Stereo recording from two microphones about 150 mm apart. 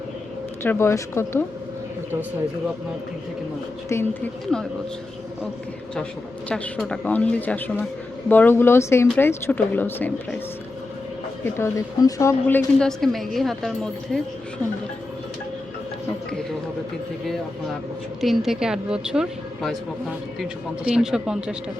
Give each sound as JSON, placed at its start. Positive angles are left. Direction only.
{"t": 0.6, "sound": "speech", "side_deg": 15}
{"t": 3.8, "sound": "speech", "side_deg": 15}
{"t": 4.5, "sound": "a woman's voice", "side_deg": 5}
{"t": 6.5, "sound": "speech", "side_deg": 5}
{"t": 11.4, "sound": "speech", "side_deg": 15}
{"t": 13.0, "sound": "a woman's voice", "side_deg": 0}
{"t": 18.2, "sound": "a woman's voice", "side_deg": 0}